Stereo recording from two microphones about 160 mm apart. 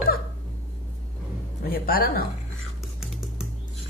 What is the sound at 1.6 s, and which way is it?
Speech, 70° left (ahead or behind).